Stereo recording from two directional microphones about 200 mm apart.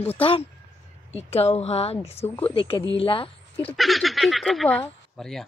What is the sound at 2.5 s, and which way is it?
Speech, 25° left (ahead or behind).